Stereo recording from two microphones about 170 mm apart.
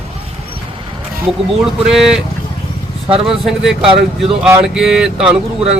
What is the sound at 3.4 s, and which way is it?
Speech, centre (ahead or behind).